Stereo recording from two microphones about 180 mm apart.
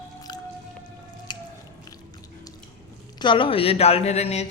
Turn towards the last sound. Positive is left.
turn(degrees=35)  # may be behind; listen again after turning